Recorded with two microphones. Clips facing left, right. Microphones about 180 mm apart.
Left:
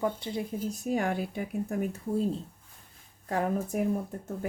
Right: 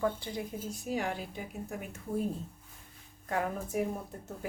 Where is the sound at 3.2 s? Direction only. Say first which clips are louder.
Left 3 dB; 35° left (ahead or behind).